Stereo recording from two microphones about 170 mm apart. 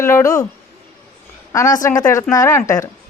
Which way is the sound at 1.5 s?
20° left (ahead or behind).